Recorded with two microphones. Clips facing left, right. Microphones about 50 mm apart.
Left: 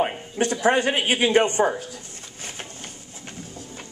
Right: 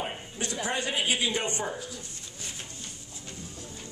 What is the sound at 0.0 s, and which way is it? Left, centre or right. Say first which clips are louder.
A man's voice: left 11 dB; left.